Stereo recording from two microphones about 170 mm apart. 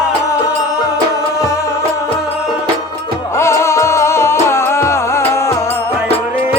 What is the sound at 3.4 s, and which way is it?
Music, 15° left (ahead or behind).